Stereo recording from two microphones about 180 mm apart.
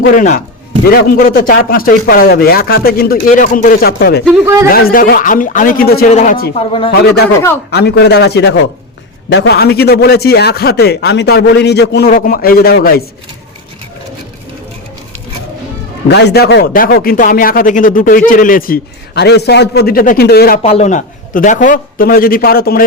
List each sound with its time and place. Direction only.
0.0 s a man's voice: 45° left (ahead or behind)
0.9 s a man's voice: 55° left (ahead or behind)
6.6 s a man's voice: 30° left (ahead or behind)
7.7 s a man's voice: 65° left (ahead or behind)
16.0 s speech: 65° left (ahead or behind)
20.6 s a man's voice: 35° left (ahead or behind); by 22.9 s 55° left (ahead or behind)